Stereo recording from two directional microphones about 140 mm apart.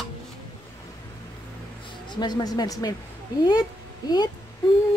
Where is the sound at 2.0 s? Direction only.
30° left (ahead or behind).